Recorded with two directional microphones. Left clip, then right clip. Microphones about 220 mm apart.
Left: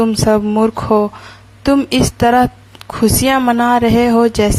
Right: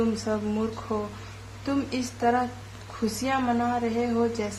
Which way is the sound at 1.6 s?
45° left (ahead or behind).